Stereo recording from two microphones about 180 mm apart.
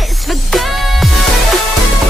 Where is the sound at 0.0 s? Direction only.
Centre (ahead or behind).